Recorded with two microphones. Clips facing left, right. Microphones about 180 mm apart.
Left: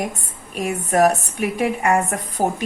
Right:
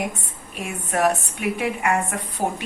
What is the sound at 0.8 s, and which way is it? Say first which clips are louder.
A woman's voice: left 4 dB; 40° left (ahead or behind).